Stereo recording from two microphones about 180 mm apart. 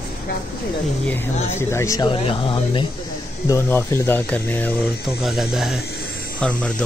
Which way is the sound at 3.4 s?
15° left (ahead or behind).